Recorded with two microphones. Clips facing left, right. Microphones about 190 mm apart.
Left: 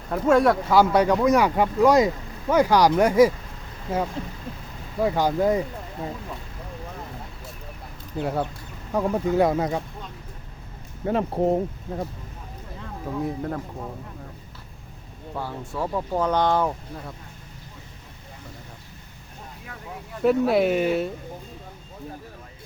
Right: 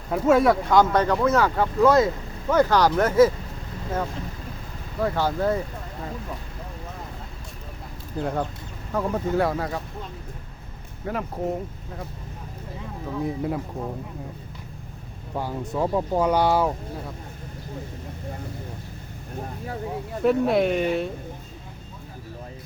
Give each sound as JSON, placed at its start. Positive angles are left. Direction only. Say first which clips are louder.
{"t": 0.1, "sound": "speech", "louder": "even", "side_deg": -5}
{"t": 8.2, "sound": "speech", "louder": "left 1 dB", "side_deg": 5}
{"t": 11.0, "sound": "speech", "louder": "left 5 dB", "side_deg": 30}
{"t": 13.1, "sound": "speech", "louder": "even", "side_deg": 0}
{"t": 13.4, "sound": "speech", "louder": "right 3 dB", "side_deg": -10}
{"t": 15.4, "sound": "speech", "louder": "right 4 dB", "side_deg": -15}
{"t": 20.2, "sound": "speech", "louder": "left 1 dB", "side_deg": 0}